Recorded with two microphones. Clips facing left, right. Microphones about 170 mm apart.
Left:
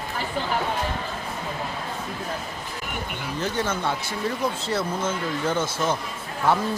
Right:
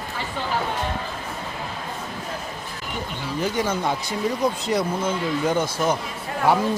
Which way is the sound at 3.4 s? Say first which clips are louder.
Right 3 dB; 10° right (ahead or behind).